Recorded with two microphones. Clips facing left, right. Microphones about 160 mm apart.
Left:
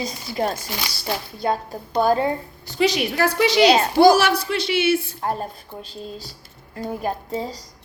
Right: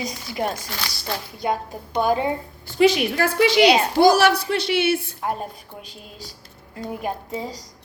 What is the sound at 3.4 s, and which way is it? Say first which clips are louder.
Speech: right 2 dB; 45° left (ahead or behind).